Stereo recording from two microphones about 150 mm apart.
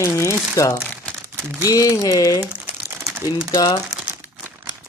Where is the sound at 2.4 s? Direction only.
10° right (ahead or behind).